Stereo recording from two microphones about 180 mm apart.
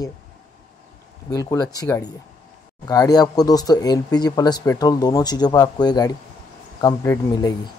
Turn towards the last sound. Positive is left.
turn(degrees=20)  # may be behind; listen again after turning